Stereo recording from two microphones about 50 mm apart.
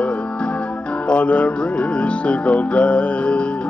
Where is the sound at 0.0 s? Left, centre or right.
Left.